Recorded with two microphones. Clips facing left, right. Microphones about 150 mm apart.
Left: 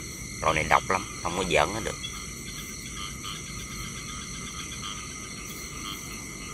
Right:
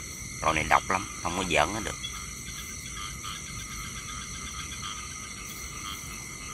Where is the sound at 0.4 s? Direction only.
5° right (ahead or behind).